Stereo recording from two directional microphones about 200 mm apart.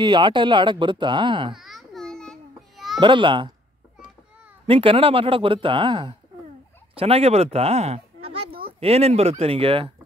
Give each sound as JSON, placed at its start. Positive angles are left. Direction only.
{"t": 0.0, "sound": "speech", "side_deg": -25}
{"t": 1.5, "sound": "a sound", "side_deg": 0}
{"t": 3.0, "sound": "speech", "side_deg": -25}
{"t": 4.6, "sound": "speech", "side_deg": -25}